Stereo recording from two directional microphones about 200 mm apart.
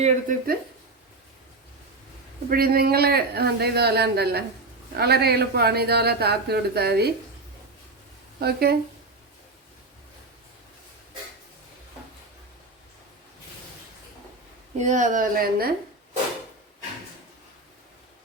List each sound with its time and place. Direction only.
0.0 s speech: 40° right (ahead or behind)
2.5 s speech: 50° right (ahead or behind)
8.4 s speech: 50° right (ahead or behind)
14.8 s speech: 35° right (ahead or behind)